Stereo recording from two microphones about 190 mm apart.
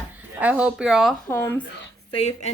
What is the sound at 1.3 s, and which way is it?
Speech, 10° left (ahead or behind).